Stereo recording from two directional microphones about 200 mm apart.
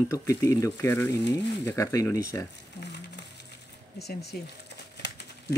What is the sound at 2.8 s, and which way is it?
Speech, 60° left (ahead or behind).